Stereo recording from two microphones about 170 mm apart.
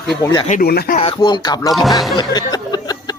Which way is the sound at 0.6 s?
65° left (ahead or behind).